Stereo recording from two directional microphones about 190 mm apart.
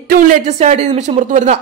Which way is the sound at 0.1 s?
40° right (ahead or behind).